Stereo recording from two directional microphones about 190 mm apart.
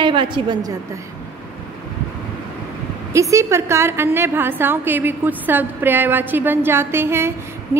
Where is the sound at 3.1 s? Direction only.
15° right (ahead or behind).